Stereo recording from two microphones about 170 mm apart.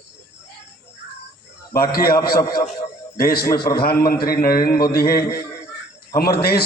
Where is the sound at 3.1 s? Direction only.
60° left (ahead or behind).